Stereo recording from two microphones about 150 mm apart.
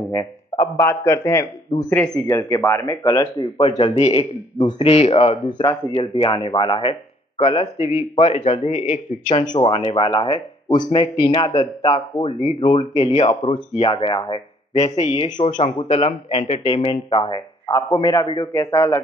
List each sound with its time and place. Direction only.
0.1 s a man's voice: 15° left (ahead or behind)
1.9 s a man's voice: 5° left (ahead or behind)
2.2 s speech: 20° left (ahead or behind)
3.5 s speech: 45° left (ahead or behind)
9.5 s speech: 35° left (ahead or behind)
13.1 s speech: 45° left (ahead or behind)
14.8 s speech: 45° left (ahead or behind); by 18.5 s 30° left (ahead or behind)
18.5 s a man's voice: 15° left (ahead or behind)